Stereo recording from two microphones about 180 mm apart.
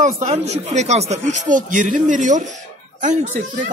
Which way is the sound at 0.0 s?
40° right (ahead or behind).